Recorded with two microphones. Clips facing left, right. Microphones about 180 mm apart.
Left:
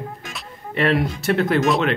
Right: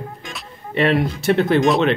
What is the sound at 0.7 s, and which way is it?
Speech, 20° right (ahead or behind).